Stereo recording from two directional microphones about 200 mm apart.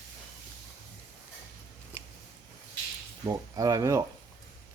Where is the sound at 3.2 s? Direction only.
20° right (ahead or behind).